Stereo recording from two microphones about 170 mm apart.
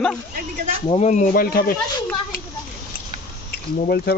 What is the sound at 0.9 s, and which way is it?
Speech, 45° left (ahead or behind).